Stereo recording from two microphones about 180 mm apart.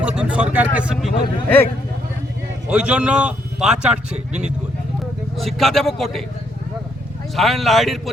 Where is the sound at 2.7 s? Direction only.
5° right (ahead or behind).